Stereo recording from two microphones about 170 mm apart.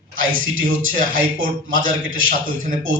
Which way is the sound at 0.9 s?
55° right (ahead or behind).